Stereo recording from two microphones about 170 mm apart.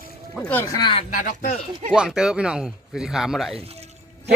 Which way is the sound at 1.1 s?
50° left (ahead or behind).